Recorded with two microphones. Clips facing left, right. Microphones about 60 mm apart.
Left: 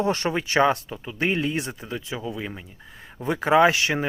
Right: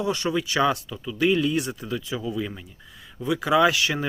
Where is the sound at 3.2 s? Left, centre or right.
Left.